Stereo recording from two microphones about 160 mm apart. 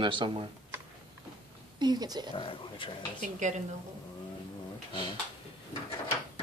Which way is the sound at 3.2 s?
50° right (ahead or behind).